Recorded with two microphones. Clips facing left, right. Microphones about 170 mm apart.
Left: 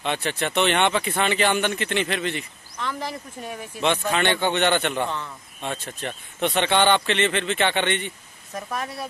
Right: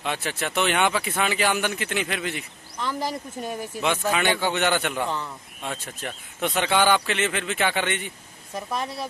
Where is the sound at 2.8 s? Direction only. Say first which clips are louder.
Right 2 dB; 40° right (ahead or behind).